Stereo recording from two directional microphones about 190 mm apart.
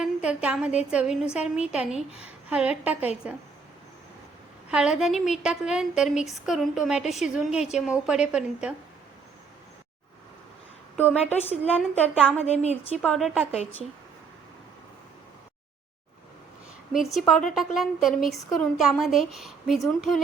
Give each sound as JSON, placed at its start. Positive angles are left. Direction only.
{"t": 0.0, "sound": "a woman's voice", "side_deg": -5}
{"t": 4.7, "sound": "a woman's voice", "side_deg": -5}
{"t": 10.9, "sound": "a woman's voice", "side_deg": 10}
{"t": 12.5, "sound": "a woman's voice", "side_deg": 35}
{"t": 13.0, "sound": "a woman's voice", "side_deg": 5}
{"t": 16.9, "sound": "a woman's voice", "side_deg": 0}